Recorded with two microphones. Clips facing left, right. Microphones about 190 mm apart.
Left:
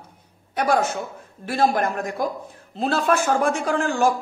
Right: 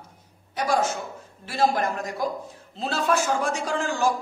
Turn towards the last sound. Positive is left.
turn(degrees=55)  # may be behind; listen again after turning